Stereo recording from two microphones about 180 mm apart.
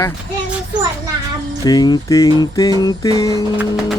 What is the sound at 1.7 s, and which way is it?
Speech, 20° left (ahead or behind).